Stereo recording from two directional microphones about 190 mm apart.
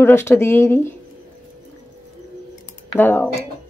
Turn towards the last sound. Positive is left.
turn(degrees=10)  # may be behind; listen again after turning